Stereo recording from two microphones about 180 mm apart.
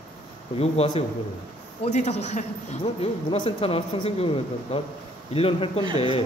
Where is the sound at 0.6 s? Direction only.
35° left (ahead or behind).